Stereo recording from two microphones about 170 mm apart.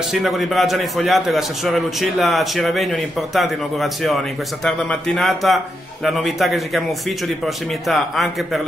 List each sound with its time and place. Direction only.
0.1 s a man's voice: centre (ahead or behind)